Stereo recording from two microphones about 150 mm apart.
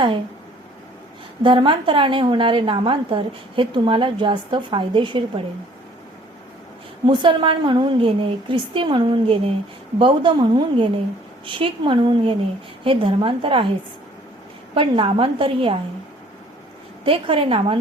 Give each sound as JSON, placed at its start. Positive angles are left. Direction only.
{"t": 1.4, "sound": "a woman's voice", "side_deg": -35}
{"t": 7.0, "sound": "a woman's voice", "side_deg": -30}
{"t": 14.8, "sound": "a woman's voice", "side_deg": -35}
{"t": 17.1, "sound": "a woman's voice", "side_deg": -35}